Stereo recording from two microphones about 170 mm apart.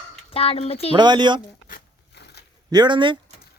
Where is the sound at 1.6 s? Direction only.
65° left (ahead or behind).